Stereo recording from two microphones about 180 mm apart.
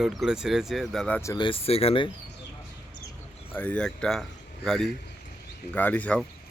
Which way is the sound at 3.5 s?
10° left (ahead or behind).